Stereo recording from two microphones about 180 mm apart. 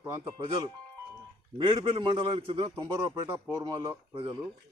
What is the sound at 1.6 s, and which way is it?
Speech, 30° right (ahead or behind).